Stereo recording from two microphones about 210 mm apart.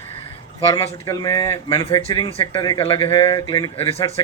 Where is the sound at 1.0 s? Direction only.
20° left (ahead or behind).